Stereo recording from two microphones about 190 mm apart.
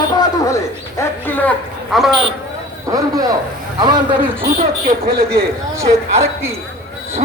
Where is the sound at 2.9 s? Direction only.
20° right (ahead or behind).